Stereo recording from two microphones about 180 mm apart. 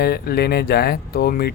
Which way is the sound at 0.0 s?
60° left (ahead or behind).